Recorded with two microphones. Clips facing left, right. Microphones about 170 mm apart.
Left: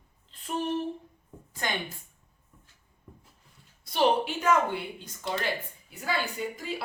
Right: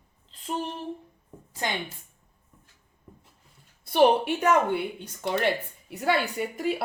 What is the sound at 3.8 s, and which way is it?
Speech, 55° right (ahead or behind).